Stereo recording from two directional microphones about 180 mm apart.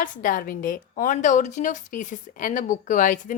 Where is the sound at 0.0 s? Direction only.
45° left (ahead or behind).